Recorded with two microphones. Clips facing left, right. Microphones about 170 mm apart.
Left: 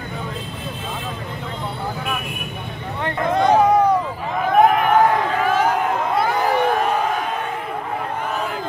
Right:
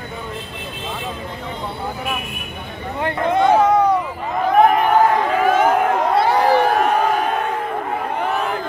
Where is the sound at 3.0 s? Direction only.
20° right (ahead or behind).